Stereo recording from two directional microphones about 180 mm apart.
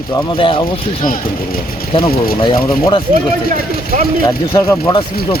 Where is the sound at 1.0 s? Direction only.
50° left (ahead or behind).